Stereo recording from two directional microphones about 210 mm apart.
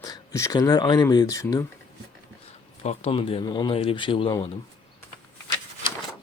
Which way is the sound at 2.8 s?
30° left (ahead or behind).